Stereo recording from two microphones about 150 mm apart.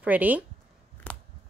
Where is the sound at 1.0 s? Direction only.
10° left (ahead or behind).